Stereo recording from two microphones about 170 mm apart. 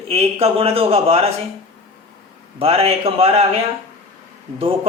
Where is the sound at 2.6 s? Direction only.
35° right (ahead or behind).